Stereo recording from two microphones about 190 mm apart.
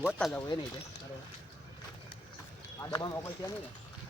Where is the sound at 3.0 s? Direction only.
15° left (ahead or behind).